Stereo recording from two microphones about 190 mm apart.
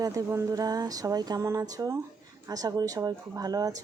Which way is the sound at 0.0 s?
15° right (ahead or behind).